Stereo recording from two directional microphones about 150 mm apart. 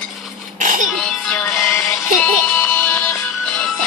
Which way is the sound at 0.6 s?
60° right (ahead or behind).